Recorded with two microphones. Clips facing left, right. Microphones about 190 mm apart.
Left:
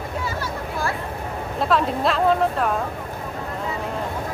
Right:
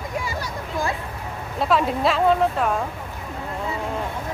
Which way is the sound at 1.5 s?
Centre (ahead or behind).